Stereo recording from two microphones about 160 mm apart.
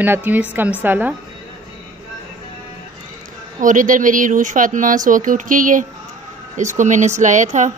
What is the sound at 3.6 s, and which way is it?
Speech, 55° right (ahead or behind).